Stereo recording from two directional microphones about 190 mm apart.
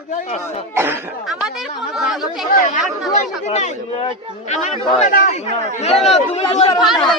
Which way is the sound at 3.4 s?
35° left (ahead or behind).